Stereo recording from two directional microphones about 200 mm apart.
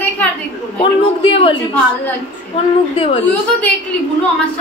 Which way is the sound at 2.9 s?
30° left (ahead or behind).